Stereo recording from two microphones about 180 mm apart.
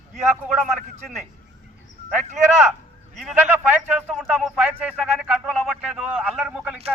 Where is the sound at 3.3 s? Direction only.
10° right (ahead or behind).